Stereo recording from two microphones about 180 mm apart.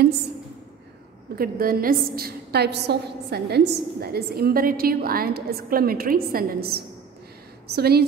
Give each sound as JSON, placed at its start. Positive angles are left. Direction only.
{"t": 1.3, "sound": "a woman's voice", "side_deg": -55}